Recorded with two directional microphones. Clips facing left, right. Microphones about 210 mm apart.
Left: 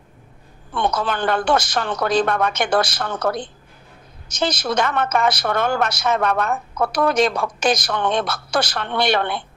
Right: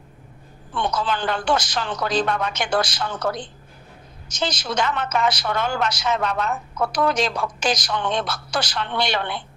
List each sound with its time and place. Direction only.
0.7 s a woman's voice: 55° left (ahead or behind)